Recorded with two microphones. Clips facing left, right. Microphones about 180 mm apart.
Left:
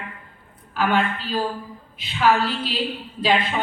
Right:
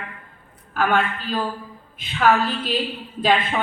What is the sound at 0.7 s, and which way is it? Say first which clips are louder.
A woman's voice: even; 50° right (ahead or behind).